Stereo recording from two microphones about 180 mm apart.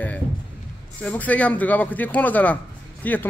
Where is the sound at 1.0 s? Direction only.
10° left (ahead or behind).